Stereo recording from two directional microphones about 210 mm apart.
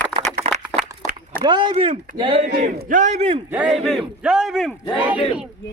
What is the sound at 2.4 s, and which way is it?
A man's voice, 35° right (ahead or behind).